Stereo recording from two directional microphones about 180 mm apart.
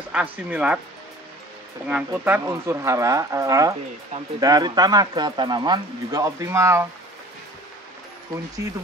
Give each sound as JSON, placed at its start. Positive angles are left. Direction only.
{"t": 0.1, "sound": "speech", "side_deg": -10}
{"t": 1.9, "sound": "speech", "side_deg": -10}